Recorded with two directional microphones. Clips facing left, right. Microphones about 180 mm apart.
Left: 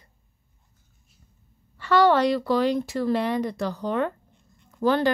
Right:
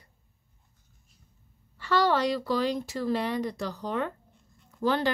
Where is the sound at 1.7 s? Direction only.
60° left (ahead or behind).